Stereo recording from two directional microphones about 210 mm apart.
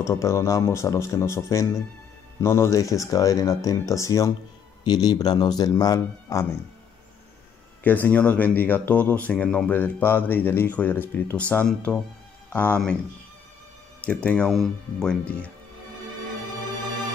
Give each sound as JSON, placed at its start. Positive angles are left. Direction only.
{"t": 0.0, "sound": "speech", "side_deg": 15}
{"t": 7.8, "sound": "speech", "side_deg": 10}
{"t": 14.0, "sound": "speech", "side_deg": 5}